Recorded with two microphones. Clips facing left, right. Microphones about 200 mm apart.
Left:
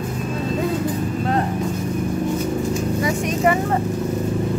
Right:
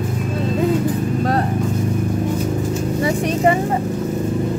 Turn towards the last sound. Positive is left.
turn(degrees=-30)  # may be behind; listen again after turning